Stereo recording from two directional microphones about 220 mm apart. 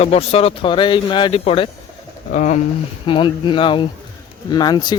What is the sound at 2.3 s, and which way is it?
Speech, 35° left (ahead or behind).